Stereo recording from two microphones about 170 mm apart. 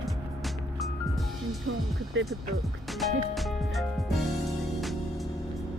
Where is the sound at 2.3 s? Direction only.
Centre (ahead or behind).